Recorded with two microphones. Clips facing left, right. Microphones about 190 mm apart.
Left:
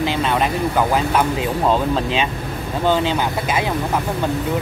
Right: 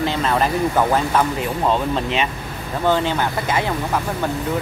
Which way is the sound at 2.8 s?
15° left (ahead or behind).